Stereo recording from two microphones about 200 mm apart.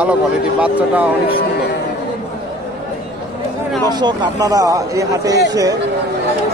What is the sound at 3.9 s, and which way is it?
Speech, 20° right (ahead or behind).